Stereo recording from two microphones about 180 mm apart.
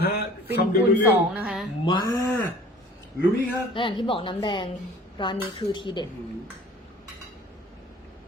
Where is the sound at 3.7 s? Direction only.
25° left (ahead or behind).